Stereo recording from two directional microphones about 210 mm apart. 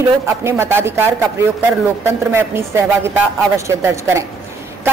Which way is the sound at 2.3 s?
10° right (ahead or behind).